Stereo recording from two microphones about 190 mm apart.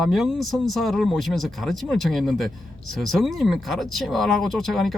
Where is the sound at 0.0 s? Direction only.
Centre (ahead or behind).